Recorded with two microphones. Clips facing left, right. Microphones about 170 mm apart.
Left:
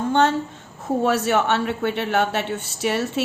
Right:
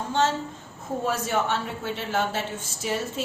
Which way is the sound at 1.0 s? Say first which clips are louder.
Left 6 dB; 70° left (ahead or behind).